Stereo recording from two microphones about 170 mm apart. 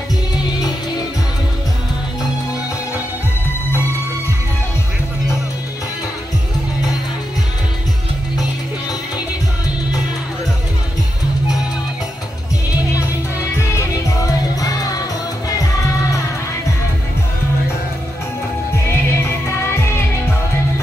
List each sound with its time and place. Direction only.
13.7 s music: 20° left (ahead or behind)
18.9 s music: 15° left (ahead or behind)